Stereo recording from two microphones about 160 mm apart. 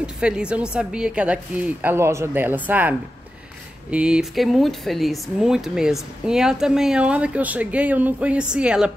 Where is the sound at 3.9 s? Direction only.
5° right (ahead or behind).